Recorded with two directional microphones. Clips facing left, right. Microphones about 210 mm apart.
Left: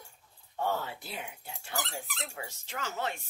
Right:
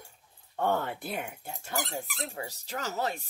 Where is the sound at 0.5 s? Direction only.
55° right (ahead or behind).